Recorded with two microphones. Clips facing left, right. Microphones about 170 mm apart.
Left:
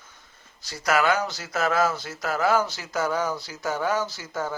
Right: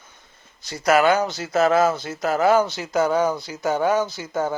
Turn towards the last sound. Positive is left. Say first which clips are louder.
# right 6 dB
turn(degrees=-20)  # may be behind; listen again after turning